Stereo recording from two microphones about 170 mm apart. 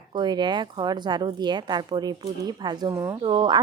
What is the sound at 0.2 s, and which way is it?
Speech, 25° right (ahead or behind).